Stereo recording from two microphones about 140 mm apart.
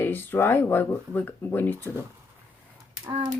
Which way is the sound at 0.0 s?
15° left (ahead or behind).